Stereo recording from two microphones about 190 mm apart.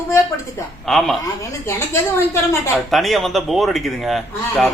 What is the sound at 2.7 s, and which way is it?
Speech, centre (ahead or behind).